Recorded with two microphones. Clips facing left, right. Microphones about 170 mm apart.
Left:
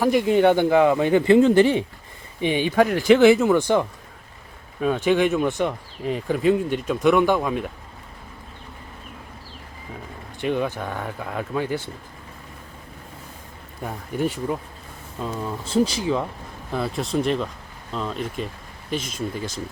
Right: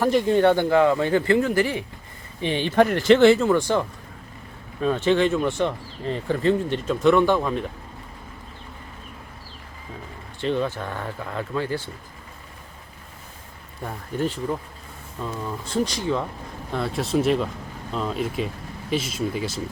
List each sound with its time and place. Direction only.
0.0 s speech: 10° left (ahead or behind)
2.4 s speech: 15° left (ahead or behind)
4.8 s speech: 10° left (ahead or behind)
10.4 s speech: 15° left (ahead or behind)
13.8 s speech: 10° left (ahead or behind); by 19.6 s 5° right (ahead or behind)